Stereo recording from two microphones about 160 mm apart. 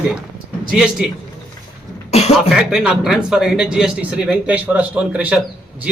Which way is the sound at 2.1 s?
40° left (ahead or behind).